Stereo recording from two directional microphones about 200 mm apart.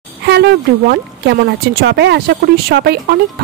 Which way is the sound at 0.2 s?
60° right (ahead or behind).